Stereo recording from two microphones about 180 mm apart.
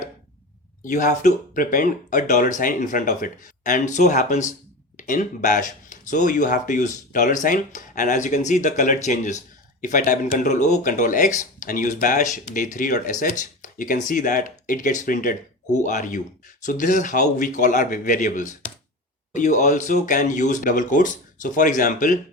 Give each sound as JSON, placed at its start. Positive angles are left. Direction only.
{"t": 0.9, "sound": "speech", "side_deg": 45}